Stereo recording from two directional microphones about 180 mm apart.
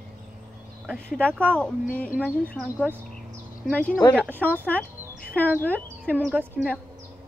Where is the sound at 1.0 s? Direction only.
5° left (ahead or behind).